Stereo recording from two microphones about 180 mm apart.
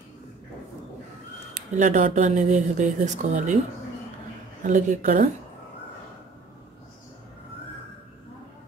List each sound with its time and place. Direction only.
1.5 s speech: 45° right (ahead or behind)
4.6 s speech: 45° right (ahead or behind)